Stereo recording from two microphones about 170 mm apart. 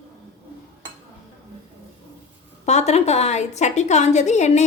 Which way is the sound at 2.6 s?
40° left (ahead or behind).